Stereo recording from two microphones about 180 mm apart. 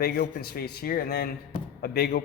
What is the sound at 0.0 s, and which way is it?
A man's voice, 60° left (ahead or behind).